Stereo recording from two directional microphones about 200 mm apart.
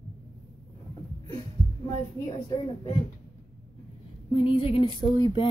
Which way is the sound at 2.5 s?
25° left (ahead or behind).